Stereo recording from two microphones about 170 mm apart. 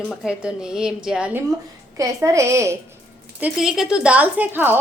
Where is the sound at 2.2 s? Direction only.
15° right (ahead or behind).